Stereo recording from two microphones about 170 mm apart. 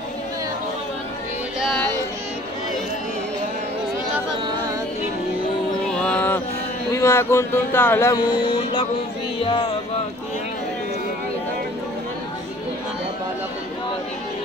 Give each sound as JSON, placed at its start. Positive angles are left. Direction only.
{"t": 1.6, "sound": "music", "side_deg": 0}
{"t": 5.9, "sound": "music", "side_deg": 5}
{"t": 6.9, "sound": "speech", "side_deg": 15}
{"t": 9.4, "sound": "a sound", "side_deg": 35}